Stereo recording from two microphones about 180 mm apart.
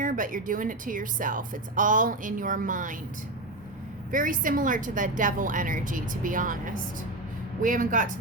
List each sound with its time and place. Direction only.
0.0 s a woman's voice: 50° right (ahead or behind)
4.1 s a woman's voice: 50° right (ahead or behind)